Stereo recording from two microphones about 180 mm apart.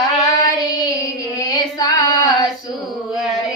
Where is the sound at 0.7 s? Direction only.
20° left (ahead or behind).